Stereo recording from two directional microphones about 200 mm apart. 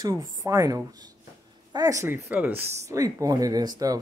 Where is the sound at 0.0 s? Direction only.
15° right (ahead or behind).